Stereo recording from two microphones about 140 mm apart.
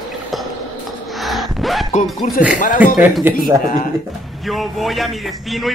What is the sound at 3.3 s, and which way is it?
Speech, 15° right (ahead or behind).